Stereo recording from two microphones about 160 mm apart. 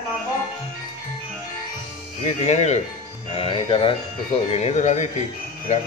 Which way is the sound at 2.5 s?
45° left (ahead or behind).